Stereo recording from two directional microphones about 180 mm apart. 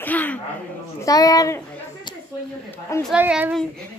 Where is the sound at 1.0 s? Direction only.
20° left (ahead or behind).